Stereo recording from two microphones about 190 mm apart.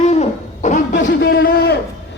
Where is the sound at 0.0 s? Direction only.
40° left (ahead or behind).